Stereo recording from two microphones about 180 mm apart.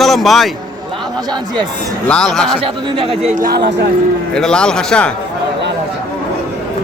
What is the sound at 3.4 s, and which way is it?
Speech, 60° right (ahead or behind).